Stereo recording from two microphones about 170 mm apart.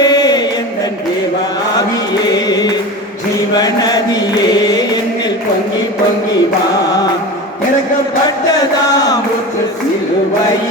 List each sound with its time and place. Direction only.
0.0 s chant: 25° left (ahead or behind)
2.3 s music: 25° left (ahead or behind)
3.5 s chant: 25° left (ahead or behind)